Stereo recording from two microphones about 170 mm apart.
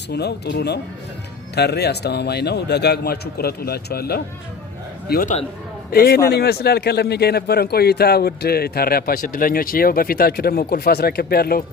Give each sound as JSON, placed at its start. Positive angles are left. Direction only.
{"t": 0.1, "sound": "a man's voice", "side_deg": 75}